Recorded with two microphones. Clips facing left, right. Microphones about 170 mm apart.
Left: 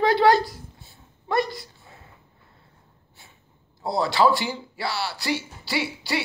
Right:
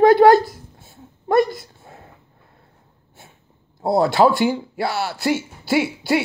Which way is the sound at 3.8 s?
50° right (ahead or behind).